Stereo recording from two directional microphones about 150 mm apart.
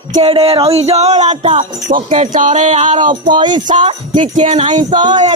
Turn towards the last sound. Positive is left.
turn(degrees=-30)  # may be behind; listen again after turning